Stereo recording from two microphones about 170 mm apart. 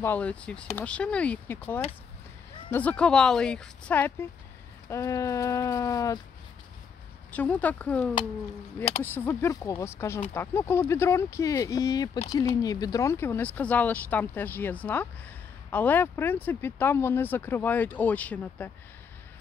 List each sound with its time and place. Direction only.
0.0 s speech: 10° left (ahead or behind)
7.2 s speech: 10° left (ahead or behind)